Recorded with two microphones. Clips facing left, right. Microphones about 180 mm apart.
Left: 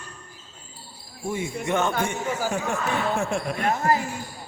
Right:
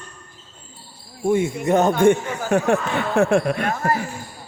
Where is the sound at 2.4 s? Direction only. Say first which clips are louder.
Right 12 dB; 65° right (ahead or behind).